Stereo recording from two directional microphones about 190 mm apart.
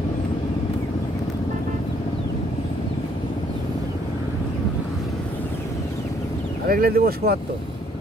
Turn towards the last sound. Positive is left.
turn(degrees=-55)  # may be behind; listen again after turning